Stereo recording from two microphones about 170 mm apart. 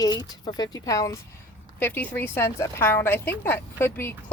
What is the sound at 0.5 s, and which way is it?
A woman's voice, 20° left (ahead or behind).